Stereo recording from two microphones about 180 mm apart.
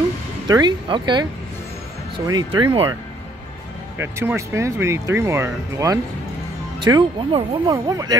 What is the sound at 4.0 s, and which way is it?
Speech, 15° right (ahead or behind).